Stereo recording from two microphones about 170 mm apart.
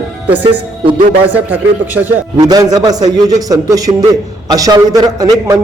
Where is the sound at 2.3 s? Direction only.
25° right (ahead or behind).